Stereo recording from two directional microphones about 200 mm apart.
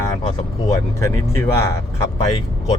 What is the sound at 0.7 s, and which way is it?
Speech, 15° left (ahead or behind).